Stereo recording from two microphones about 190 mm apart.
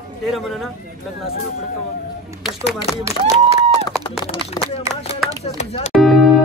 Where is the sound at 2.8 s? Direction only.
15° right (ahead or behind).